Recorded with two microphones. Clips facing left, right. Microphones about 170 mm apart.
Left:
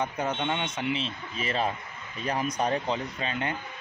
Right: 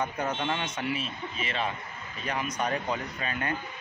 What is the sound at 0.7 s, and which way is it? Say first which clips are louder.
Speech: left 2 dB; 25° left (ahead or behind).